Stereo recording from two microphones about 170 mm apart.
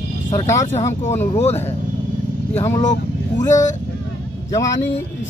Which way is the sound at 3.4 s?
45° left (ahead or behind).